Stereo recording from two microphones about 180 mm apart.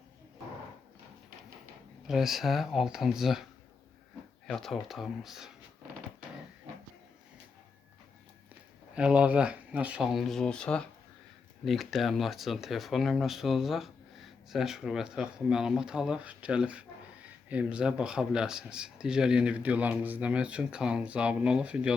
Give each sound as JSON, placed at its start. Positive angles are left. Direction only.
{"t": 2.0, "sound": "a man's voice", "side_deg": 0}
{"t": 4.4, "sound": "a man's voice", "side_deg": 0}
{"t": 9.0, "sound": "a man's voice", "side_deg": -5}